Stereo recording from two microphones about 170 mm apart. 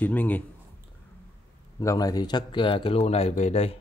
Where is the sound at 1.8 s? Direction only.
20° left (ahead or behind); by 3.7 s 40° left (ahead or behind).